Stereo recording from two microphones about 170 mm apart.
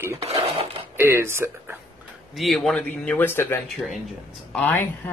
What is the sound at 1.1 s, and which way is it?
Speech, 15° right (ahead or behind).